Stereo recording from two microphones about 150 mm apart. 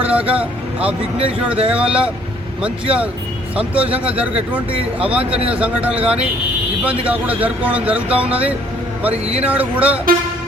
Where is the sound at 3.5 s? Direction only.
10° right (ahead or behind).